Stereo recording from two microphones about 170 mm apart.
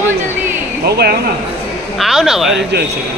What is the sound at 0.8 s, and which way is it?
Speech, 70° right (ahead or behind).